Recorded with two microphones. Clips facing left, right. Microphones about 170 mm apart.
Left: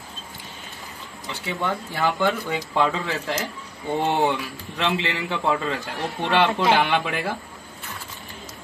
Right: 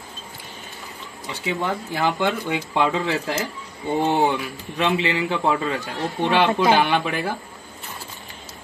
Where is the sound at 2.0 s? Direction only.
20° right (ahead or behind).